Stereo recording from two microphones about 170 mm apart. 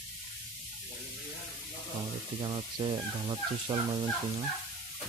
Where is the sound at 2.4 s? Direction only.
30° right (ahead or behind).